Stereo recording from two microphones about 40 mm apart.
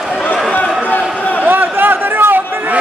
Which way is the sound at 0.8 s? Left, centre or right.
Left.